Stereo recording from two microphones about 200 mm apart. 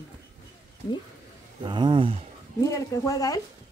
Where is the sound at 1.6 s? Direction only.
25° right (ahead or behind).